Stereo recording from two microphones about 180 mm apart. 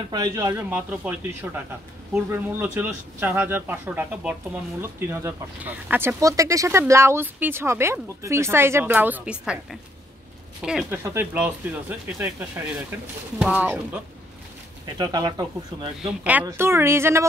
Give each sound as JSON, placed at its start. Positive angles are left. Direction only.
{"t": 0.1, "sound": "speech", "side_deg": -20}
{"t": 15.0, "sound": "speech", "side_deg": -20}
{"t": 16.0, "sound": "speech", "side_deg": -10}